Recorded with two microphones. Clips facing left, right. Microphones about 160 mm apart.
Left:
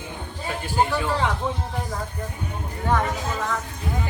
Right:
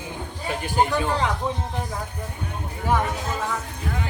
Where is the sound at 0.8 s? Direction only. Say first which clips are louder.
Right 1 dB; 20° right (ahead or behind).